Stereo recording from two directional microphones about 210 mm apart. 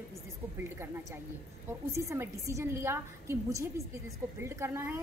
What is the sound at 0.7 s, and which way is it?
A woman's voice, 10° right (ahead or behind).